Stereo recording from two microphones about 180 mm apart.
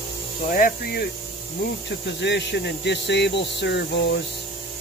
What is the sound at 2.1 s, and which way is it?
Speech, 75° left (ahead or behind).